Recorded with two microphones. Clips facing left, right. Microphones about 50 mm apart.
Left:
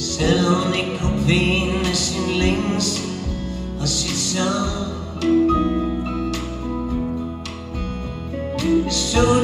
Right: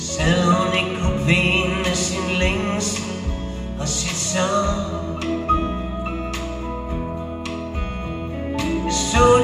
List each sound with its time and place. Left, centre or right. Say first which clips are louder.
0.2 s music: even; right
8.5 s music: left 4 dB; right